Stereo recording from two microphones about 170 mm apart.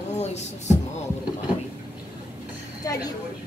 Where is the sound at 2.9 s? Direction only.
20° left (ahead or behind).